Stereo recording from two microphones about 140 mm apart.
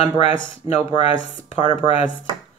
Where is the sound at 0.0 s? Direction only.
45° left (ahead or behind).